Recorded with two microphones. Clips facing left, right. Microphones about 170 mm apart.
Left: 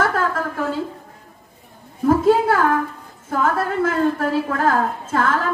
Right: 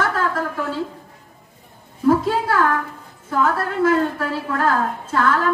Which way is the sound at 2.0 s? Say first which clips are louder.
Left 3 dB; 50° left (ahead or behind).